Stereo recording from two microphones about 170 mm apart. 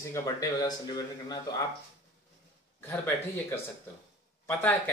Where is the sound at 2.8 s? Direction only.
15° left (ahead or behind).